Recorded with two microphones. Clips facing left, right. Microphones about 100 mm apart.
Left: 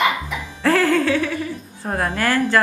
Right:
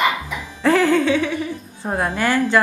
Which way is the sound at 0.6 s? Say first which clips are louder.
Right 1 dB; 5° right (ahead or behind).